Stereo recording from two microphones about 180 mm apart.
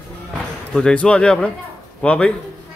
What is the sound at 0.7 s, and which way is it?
Speech, 5° left (ahead or behind).